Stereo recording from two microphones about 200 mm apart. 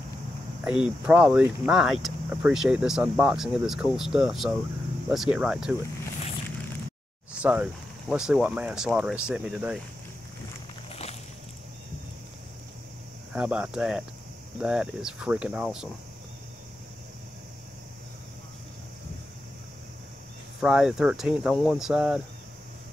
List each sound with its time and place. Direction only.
0.7 s speech: 5° right (ahead or behind)
7.3 s speech: 5° right (ahead or behind)
10.9 s a sound: 30° left (ahead or behind)
13.3 s speech: 5° right (ahead or behind)
20.6 s speech: centre (ahead or behind)